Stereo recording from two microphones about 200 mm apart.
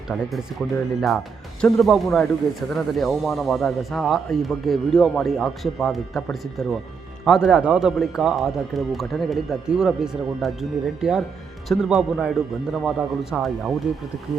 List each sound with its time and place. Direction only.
0.1 s speech: centre (ahead or behind)
1.6 s speech: centre (ahead or behind)